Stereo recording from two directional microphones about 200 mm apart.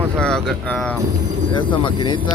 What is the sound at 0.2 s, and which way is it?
Speech, centre (ahead or behind).